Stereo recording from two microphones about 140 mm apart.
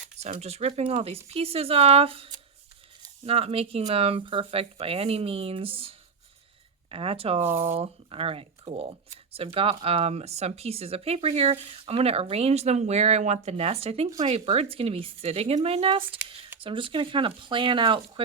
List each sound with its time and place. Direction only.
0.2 s speech: 50° right (ahead or behind)
6.9 s speech: 45° right (ahead or behind)